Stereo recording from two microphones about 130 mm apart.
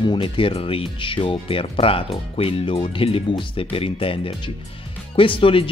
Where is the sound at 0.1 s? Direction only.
45° left (ahead or behind).